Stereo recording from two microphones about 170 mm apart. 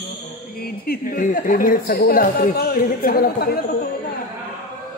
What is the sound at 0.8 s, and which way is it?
Speech, 55° left (ahead or behind).